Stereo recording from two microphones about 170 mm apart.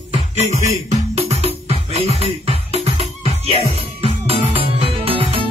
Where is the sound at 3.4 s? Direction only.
35° right (ahead or behind).